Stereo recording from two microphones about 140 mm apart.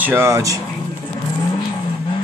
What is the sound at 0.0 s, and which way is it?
Speech, 15° right (ahead or behind).